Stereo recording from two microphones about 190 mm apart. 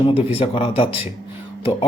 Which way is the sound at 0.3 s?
30° left (ahead or behind).